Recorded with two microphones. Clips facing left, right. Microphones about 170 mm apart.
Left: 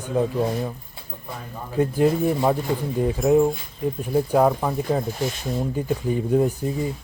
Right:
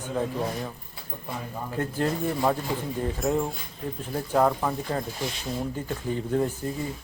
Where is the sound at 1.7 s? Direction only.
15° left (ahead or behind).